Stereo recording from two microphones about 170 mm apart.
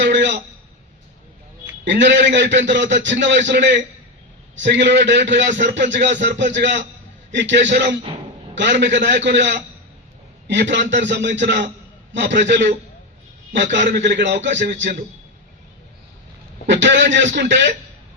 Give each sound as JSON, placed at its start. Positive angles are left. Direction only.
{"t": 0.0, "sound": "a sound", "side_deg": -90}
{"t": 1.6, "sound": "a man's voice", "side_deg": -90}
{"t": 13.8, "sound": "a man's voice", "side_deg": -70}
{"t": 14.2, "sound": "a man's voice", "side_deg": -90}
{"t": 16.6, "sound": "a man's voice", "side_deg": -90}